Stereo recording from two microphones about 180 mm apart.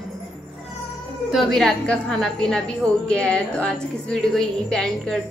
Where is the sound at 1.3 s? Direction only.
Centre (ahead or behind).